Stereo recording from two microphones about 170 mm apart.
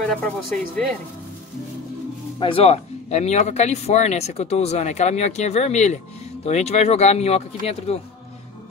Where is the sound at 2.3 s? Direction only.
30° left (ahead or behind).